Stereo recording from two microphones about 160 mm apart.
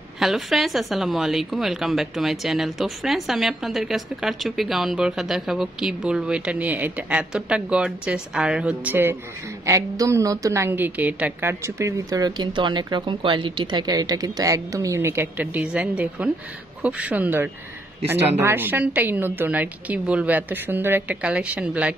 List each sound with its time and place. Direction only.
0.2 s a woman's voice: centre (ahead or behind)